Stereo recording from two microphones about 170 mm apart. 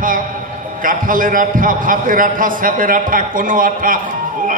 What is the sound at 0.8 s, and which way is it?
A man's voice, 55° right (ahead or behind).